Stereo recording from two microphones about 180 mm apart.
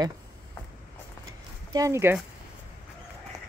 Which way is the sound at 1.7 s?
15° right (ahead or behind).